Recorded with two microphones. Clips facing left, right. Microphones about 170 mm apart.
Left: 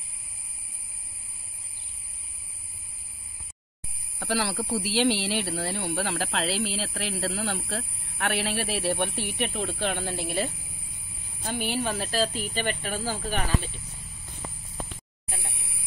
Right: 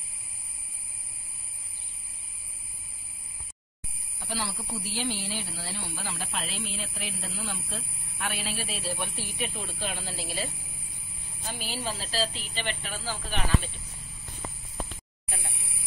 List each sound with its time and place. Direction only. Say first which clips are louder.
4.2 s speech: left 7 dB; 80° left
9.8 s speech: left 4 dB; 55° left (ahead or behind)